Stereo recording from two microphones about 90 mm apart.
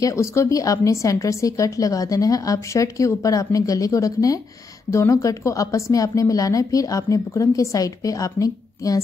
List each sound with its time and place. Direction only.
0.0 s speech: 35° left (ahead or behind)